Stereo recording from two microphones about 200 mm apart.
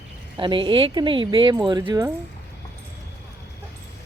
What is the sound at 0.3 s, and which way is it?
Speech, 25° right (ahead or behind).